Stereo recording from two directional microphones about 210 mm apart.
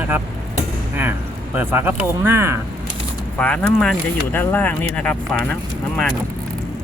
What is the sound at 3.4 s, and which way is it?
Speech, 5° left (ahead or behind).